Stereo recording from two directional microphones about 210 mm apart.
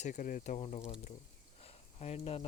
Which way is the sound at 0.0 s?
40° left (ahead or behind).